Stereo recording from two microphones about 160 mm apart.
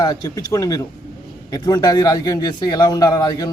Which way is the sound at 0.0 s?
25° left (ahead or behind).